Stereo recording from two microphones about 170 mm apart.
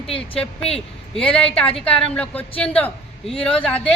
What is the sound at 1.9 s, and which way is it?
A man's voice, 5° left (ahead or behind).